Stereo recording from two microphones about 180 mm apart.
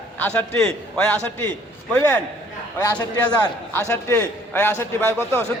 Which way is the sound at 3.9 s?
15° left (ahead or behind).